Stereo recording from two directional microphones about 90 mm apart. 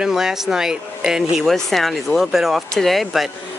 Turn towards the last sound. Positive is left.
turn(degrees=0)  # may be behind; listen again after turning